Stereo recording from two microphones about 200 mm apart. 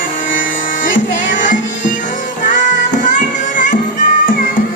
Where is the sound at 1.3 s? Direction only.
40° left (ahead or behind).